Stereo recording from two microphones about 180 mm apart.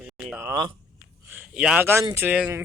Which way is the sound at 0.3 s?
20° right (ahead or behind).